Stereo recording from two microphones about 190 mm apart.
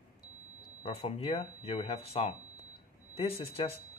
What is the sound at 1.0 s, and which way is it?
Speech, 35° left (ahead or behind).